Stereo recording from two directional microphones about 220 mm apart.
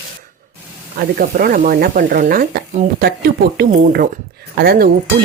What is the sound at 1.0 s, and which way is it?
Speech, 40° right (ahead or behind).